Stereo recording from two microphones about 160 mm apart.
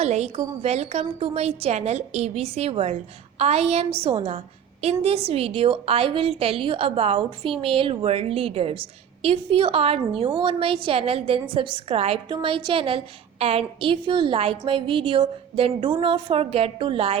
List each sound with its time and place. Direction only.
0.0 s a woman's voice: 45° right (ahead or behind)